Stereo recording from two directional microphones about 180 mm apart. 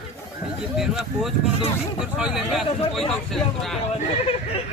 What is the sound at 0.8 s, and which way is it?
Speech, centre (ahead or behind).